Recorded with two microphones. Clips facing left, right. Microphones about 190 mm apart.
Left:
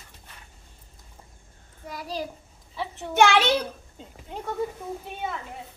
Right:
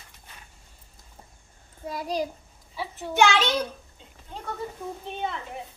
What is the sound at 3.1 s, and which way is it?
Speech, 60° left (ahead or behind).